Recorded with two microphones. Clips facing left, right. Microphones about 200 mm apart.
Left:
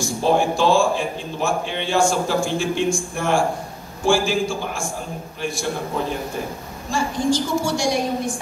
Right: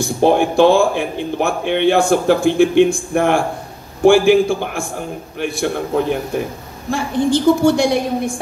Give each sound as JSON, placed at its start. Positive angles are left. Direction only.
{"t": 0.0, "sound": "a man's voice", "side_deg": -60}